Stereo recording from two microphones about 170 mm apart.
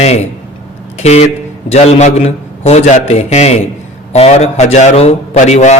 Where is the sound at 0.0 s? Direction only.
40° left (ahead or behind).